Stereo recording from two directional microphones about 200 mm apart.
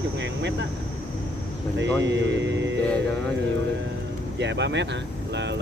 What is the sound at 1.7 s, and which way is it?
Speech, 60° right (ahead or behind).